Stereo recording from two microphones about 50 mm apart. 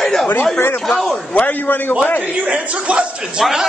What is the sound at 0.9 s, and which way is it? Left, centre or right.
Speech, centre.